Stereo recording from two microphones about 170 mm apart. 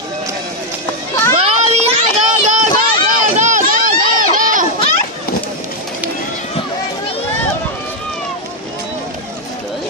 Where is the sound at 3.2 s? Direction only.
45° right (ahead or behind).